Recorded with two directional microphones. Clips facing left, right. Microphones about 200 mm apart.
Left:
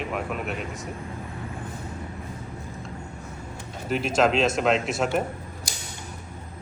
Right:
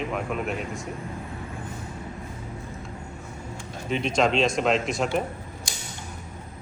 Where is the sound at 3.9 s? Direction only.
5° left (ahead or behind).